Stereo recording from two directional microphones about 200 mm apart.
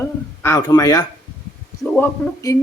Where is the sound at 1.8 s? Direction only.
5° left (ahead or behind).